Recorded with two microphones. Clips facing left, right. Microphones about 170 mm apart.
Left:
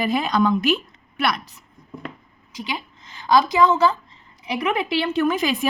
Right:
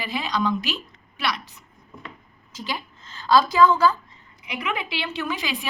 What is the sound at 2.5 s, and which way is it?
A woman's voice, 15° left (ahead or behind).